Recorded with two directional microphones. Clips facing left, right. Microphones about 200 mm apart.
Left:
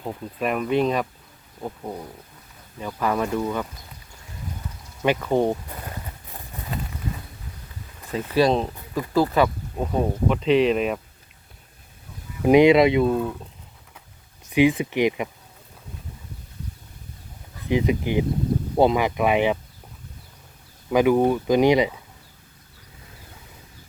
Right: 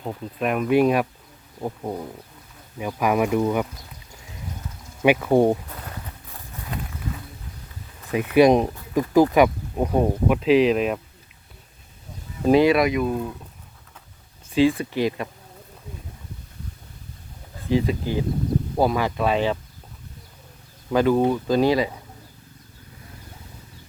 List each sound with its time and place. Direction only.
0.0 s speech: centre (ahead or behind); by 3.7 s 15° right (ahead or behind)
5.0 s speech: 10° right (ahead or behind)
6.7 s a sound: centre (ahead or behind)
8.1 s speech: 15° right (ahead or behind)
12.4 s speech: 15° left (ahead or behind)
14.5 s speech: 20° left (ahead or behind)
17.7 s speech: 20° left (ahead or behind)
20.9 s speech: 15° left (ahead or behind)